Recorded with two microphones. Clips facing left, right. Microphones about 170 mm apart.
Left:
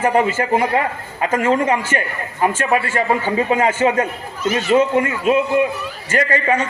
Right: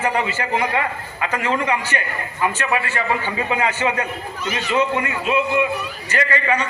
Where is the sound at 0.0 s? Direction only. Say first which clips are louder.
Left 5 dB; 45° left (ahead or behind).